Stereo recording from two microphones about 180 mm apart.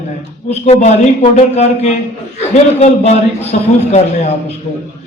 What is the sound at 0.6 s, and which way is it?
A man's voice, 40° left (ahead or behind).